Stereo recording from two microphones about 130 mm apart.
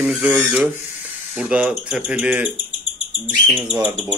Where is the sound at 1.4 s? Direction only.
10° right (ahead or behind).